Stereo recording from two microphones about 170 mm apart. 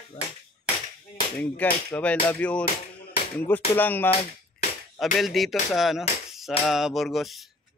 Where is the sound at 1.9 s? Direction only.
10° left (ahead or behind).